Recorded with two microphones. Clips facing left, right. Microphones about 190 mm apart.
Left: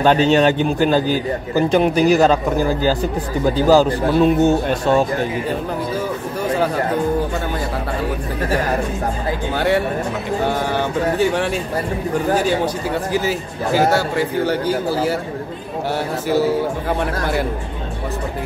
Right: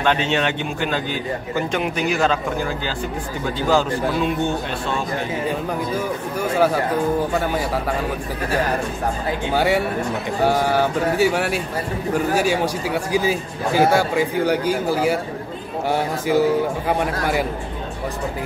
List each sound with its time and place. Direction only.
0.0 s a man's voice: 40° left (ahead or behind)
9.6 s a man's voice: 10° right (ahead or behind)